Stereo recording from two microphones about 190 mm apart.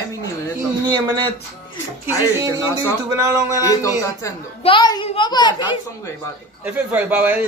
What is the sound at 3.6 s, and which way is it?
A woman's voice, 15° left (ahead or behind).